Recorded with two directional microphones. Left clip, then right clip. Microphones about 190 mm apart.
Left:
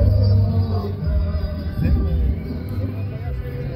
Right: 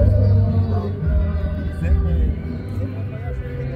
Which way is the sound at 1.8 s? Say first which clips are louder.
Left 5 dB; 35° right (ahead or behind).